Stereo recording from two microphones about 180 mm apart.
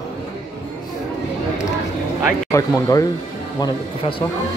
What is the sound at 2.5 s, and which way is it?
Speech, 20° left (ahead or behind).